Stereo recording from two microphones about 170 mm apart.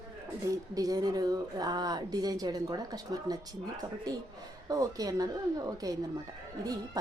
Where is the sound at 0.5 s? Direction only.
20° right (ahead or behind).